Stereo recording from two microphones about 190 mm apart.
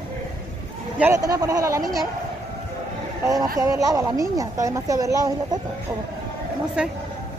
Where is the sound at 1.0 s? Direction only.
15° right (ahead or behind).